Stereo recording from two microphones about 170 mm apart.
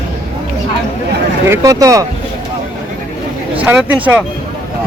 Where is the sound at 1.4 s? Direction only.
15° right (ahead or behind).